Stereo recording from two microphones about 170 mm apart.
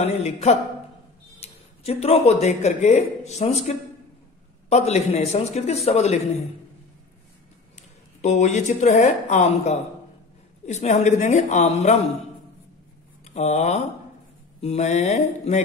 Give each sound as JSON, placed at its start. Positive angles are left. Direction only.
{"t": 0.0, "sound": "a man's voice", "side_deg": 40}
{"t": 8.2, "sound": "a woman's voice", "side_deg": 40}
{"t": 13.2, "sound": "a woman's voice", "side_deg": 40}